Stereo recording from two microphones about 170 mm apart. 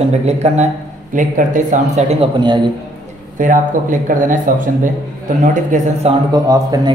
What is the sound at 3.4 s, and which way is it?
Speech, 50° right (ahead or behind).